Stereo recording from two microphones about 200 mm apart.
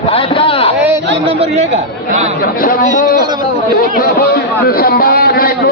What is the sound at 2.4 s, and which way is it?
A man's voice, 45° left (ahead or behind).